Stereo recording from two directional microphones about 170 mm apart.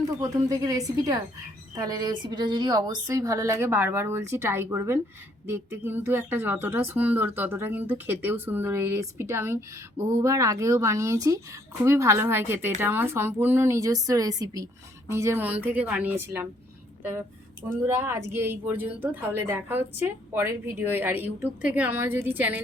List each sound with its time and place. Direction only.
0.2 s a woman's voice: 20° right (ahead or behind)